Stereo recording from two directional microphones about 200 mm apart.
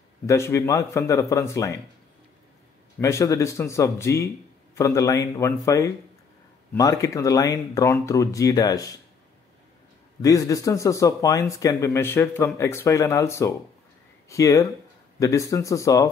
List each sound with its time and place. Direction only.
0.3 s speech: 15° left (ahead or behind)
3.0 s speech: 15° left (ahead or behind)
10.2 s speech: 15° left (ahead or behind)